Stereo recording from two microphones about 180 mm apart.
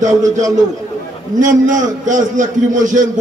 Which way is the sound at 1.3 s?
45° right (ahead or behind).